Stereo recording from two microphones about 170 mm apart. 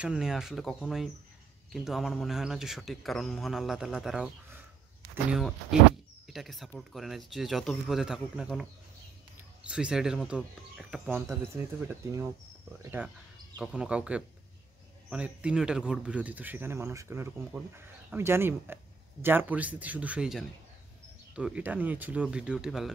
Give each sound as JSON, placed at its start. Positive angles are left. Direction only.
{"t": 0.0, "sound": "a man's voice", "side_deg": -5}
{"t": 6.2, "sound": "a man's voice", "side_deg": 0}
{"t": 11.2, "sound": "a man's voice", "side_deg": -15}